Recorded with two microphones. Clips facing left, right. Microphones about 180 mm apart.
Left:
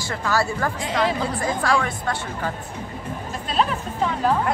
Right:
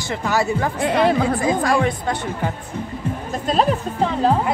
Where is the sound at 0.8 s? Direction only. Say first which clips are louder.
Right 7 dB; 60° right (ahead or behind); by 1.5 s 75° right (ahead or behind).